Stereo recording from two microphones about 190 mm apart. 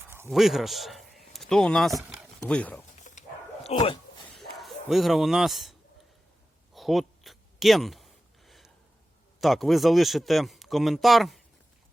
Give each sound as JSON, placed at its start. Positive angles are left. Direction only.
{"t": 0.3, "sound": "a man's voice", "side_deg": 0}
{"t": 3.0, "sound": "bow-wow", "side_deg": 40}
{"t": 4.4, "sound": "speech", "side_deg": 0}
{"t": 6.7, "sound": "a sound", "side_deg": 0}
{"t": 9.4, "sound": "speech", "side_deg": 0}